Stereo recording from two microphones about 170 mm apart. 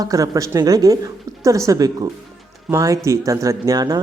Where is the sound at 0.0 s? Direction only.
20° right (ahead or behind).